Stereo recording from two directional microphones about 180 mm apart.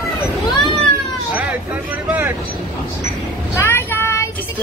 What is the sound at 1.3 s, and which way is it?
Speech, 10° right (ahead or behind).